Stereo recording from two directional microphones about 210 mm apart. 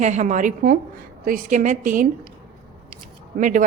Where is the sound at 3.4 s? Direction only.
40° right (ahead or behind).